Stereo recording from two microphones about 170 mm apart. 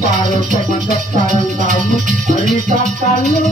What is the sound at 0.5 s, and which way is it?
Music, 45° right (ahead or behind).